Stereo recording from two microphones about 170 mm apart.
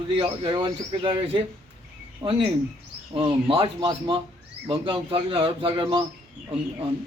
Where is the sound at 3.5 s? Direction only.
30° right (ahead or behind).